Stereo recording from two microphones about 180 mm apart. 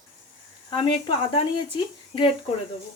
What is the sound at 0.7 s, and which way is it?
Speech, 25° left (ahead or behind).